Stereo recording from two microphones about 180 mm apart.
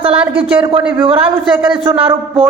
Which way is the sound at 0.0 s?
30° right (ahead or behind).